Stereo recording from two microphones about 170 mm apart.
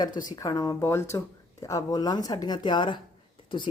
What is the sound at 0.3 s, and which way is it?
A woman's voice, 20° left (ahead or behind).